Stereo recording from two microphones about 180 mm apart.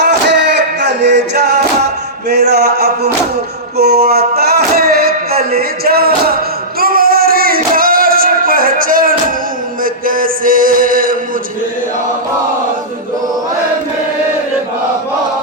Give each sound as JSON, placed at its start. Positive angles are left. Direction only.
{"t": 0.0, "sound": "music", "side_deg": -70}
{"t": 2.3, "sound": "a sound", "side_deg": -65}
{"t": 9.8, "sound": "mantra", "side_deg": -50}